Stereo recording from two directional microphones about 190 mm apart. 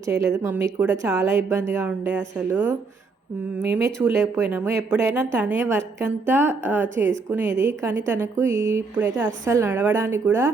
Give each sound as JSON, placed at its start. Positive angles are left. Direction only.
{"t": 0.0, "sound": "a woman's voice", "side_deg": -15}